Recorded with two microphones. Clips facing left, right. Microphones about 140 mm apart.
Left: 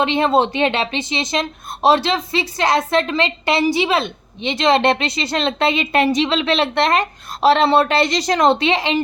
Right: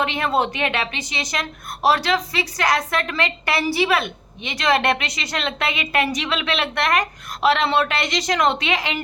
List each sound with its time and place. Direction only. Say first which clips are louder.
0.0 s a woman's voice: left 5 dB; 25° left (ahead or behind)